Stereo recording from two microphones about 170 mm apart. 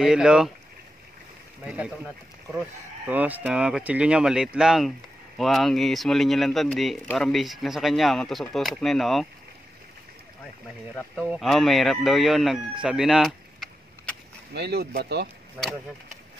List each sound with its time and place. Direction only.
0.0 s speech: 5° right (ahead or behind)
1.6 s speech: 5° right (ahead or behind)
3.1 s speech: 10° right (ahead or behind)
11.2 s speech: centre (ahead or behind)
12.8 s vehicle: 5° right (ahead or behind)
14.5 s speech: 75° right (ahead or behind)